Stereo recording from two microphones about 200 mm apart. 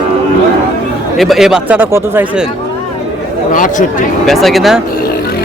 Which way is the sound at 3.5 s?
40° left (ahead or behind).